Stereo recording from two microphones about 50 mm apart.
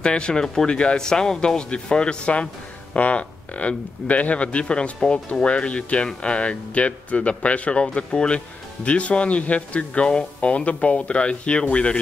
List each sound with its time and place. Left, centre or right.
0.0 s speech: centre